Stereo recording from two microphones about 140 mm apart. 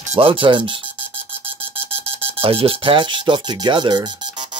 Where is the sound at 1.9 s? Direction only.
40° right (ahead or behind).